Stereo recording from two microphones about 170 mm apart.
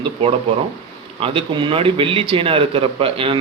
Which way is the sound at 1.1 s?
30° right (ahead or behind).